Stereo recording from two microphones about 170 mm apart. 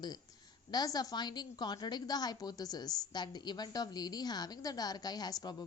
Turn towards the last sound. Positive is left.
turn(degrees=25)  # may be behind; listen again after turning